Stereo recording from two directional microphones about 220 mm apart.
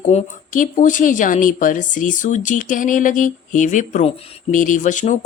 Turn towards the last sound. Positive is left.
turn(degrees=35)  # may be behind; listen again after turning